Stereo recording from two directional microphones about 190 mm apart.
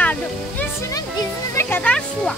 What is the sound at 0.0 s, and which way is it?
Music, 10° left (ahead or behind).